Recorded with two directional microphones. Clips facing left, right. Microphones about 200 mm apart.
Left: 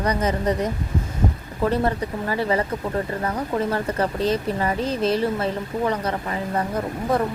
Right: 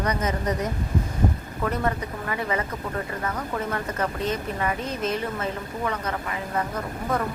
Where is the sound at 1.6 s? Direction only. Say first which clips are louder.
Left 5 dB; 30° left (ahead or behind).